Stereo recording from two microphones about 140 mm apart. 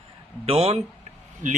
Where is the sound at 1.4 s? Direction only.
65° right (ahead or behind).